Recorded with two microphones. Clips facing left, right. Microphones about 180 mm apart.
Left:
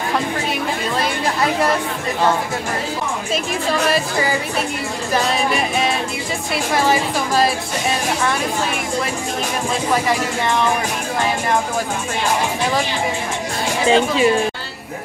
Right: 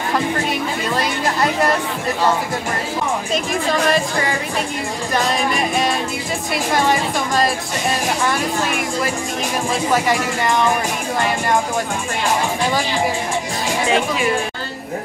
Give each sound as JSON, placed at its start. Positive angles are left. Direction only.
{"t": 6.5, "sound": "a woman's voice", "side_deg": 0}
{"t": 10.0, "sound": "a woman's voice", "side_deg": 0}
{"t": 13.8, "sound": "speech", "side_deg": 30}